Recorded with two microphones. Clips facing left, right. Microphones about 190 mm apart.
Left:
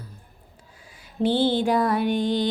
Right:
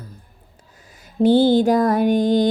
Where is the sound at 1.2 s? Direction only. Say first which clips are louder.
Right 7 dB; 40° right (ahead or behind).